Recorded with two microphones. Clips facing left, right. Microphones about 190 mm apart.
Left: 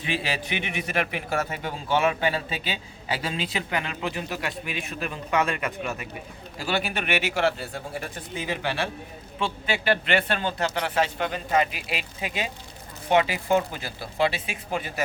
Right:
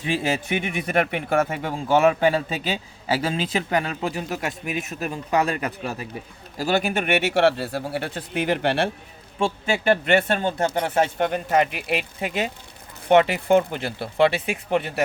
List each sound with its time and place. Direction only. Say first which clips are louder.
0.0 s speech: right 5 dB; 45° right (ahead or behind)
7.3 s speech: right 6 dB; 65° right (ahead or behind)
9.4 s speech: right 5 dB; 45° right (ahead or behind)
11.2 s speech: right 4 dB; 60° right (ahead or behind)